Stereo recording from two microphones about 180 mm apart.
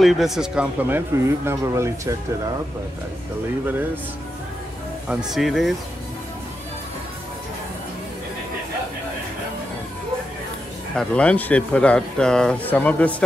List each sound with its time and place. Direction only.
0.0 s speech: centre (ahead or behind); by 2.5 s 15° right (ahead or behind)
5.0 s speech: 5° right (ahead or behind)
11.0 s speech: 5° left (ahead or behind)